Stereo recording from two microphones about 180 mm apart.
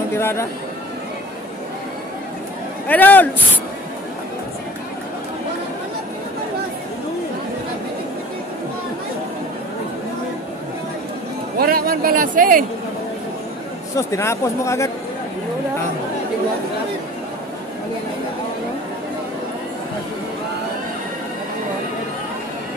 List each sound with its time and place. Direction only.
0.1 s speech: 15° left (ahead or behind)
2.9 s speech: 10° left (ahead or behind)
11.5 s a sound: 55° right (ahead or behind)
13.9 s speech: 15° left (ahead or behind)